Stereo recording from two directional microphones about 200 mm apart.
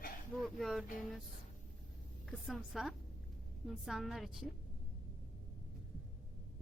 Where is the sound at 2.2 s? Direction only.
Centre (ahead or behind).